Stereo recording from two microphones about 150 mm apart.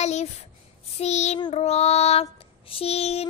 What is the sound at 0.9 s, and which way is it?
Female singing, 50° left (ahead or behind).